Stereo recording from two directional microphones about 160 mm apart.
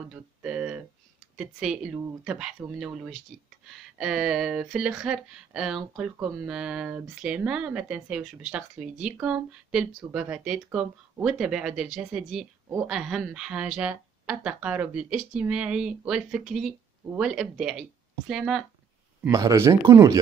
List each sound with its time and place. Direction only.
0.1 s a sound: 5° right (ahead or behind)
1.4 s speech: 5° right (ahead or behind)
19.2 s speech: 20° right (ahead or behind)